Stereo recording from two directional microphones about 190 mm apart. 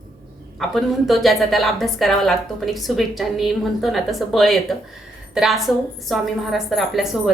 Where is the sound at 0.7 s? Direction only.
Centre (ahead or behind).